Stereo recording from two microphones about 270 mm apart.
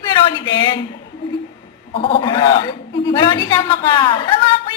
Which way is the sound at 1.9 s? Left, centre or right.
Centre.